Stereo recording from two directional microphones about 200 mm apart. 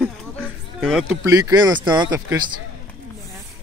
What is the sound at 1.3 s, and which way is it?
Speech, 20° right (ahead or behind).